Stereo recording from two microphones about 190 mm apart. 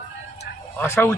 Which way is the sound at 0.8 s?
10° left (ahead or behind).